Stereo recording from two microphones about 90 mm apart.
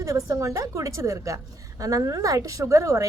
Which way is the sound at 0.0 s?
35° right (ahead or behind).